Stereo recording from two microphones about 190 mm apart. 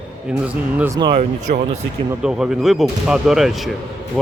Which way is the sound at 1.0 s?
25° right (ahead or behind).